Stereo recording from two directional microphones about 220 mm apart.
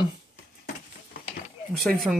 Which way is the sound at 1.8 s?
Centre (ahead or behind).